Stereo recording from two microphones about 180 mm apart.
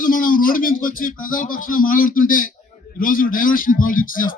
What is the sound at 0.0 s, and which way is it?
A man's voice, 50° left (ahead or behind).